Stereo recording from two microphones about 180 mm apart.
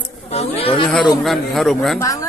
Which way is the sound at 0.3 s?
35° left (ahead or behind).